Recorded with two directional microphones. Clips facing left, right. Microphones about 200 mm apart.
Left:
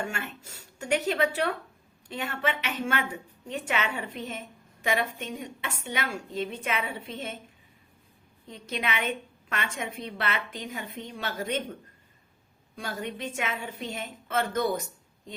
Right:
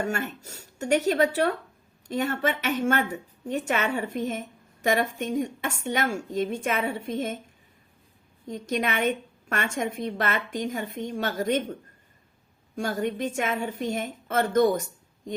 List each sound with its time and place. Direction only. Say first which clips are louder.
0.0 s a woman's voice: right 6 dB; 40° right (ahead or behind)
8.4 s a woman's voice: right 5 dB; 45° right (ahead or behind)
12.7 s a woman's voice: right 7 dB; 45° right (ahead or behind)